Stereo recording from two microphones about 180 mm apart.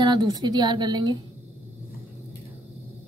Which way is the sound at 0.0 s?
25° right (ahead or behind).